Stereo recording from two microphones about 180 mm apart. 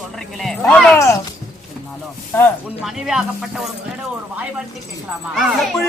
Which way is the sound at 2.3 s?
15° left (ahead or behind).